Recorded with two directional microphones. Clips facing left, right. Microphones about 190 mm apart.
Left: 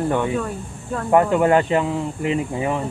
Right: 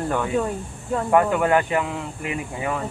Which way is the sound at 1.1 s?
20° left (ahead or behind).